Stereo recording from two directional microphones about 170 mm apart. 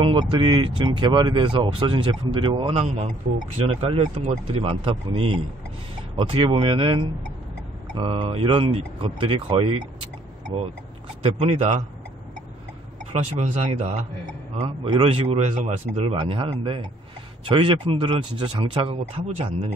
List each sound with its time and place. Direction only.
0.0 s speech: 30° right (ahead or behind)
2.8 s speech: 40° right (ahead or behind)
11.2 s speech: 40° right (ahead or behind)
13.1 s speech: 45° right (ahead or behind)